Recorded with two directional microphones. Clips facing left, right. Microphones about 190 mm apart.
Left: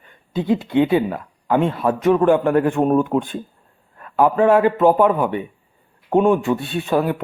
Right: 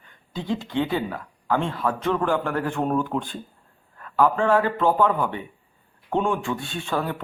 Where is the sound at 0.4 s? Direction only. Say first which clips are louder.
Left 8 dB; 20° left (ahead or behind).